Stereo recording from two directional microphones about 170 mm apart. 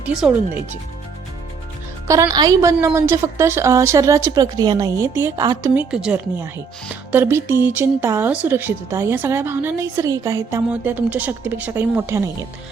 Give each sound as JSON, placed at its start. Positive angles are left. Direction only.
{"t": 0.0, "sound": "speech", "side_deg": -5}
{"t": 2.0, "sound": "speech", "side_deg": -20}
{"t": 5.9, "sound": "speech", "side_deg": -5}